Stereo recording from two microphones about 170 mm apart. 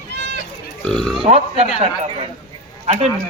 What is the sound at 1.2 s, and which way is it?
A man's voice, 35° right (ahead or behind).